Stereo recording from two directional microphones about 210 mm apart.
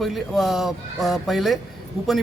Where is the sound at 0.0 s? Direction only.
Centre (ahead or behind).